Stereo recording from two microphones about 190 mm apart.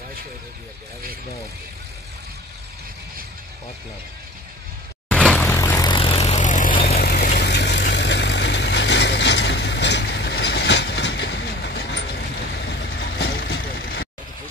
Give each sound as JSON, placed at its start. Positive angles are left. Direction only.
{"t": 5.0, "sound": "vehicle", "side_deg": 5}
{"t": 7.0, "sound": "vehicle", "side_deg": 55}